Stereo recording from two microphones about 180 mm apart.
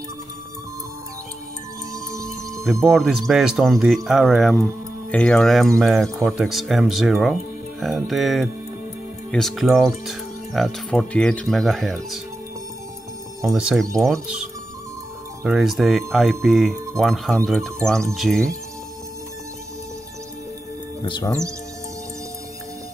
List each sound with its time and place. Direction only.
2.8 s speech: centre (ahead or behind)
13.5 s speech: centre (ahead or behind)
21.0 s speech: 20° left (ahead or behind)